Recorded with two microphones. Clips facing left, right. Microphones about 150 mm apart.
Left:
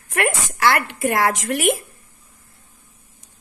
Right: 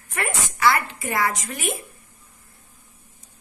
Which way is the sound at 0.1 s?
75° left (ahead or behind).